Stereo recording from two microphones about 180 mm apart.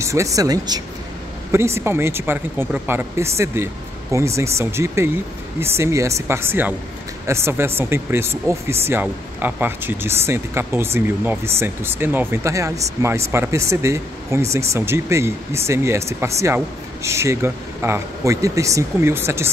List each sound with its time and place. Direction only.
0.0 s speech: 15° right (ahead or behind)